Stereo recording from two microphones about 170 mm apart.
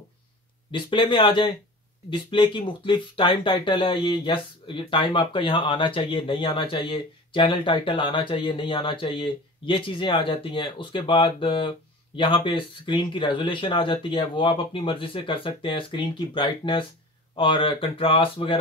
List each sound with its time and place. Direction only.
0.7 s speech: 30° left (ahead or behind)